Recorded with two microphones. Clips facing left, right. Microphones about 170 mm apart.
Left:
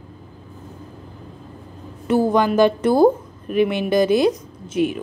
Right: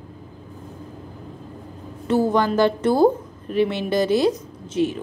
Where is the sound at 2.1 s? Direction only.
15° left (ahead or behind).